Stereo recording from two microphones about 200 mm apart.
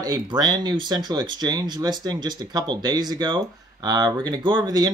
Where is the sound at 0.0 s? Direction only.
20° right (ahead or behind).